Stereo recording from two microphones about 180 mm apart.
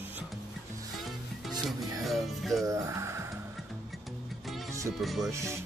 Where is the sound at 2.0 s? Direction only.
Centre (ahead or behind).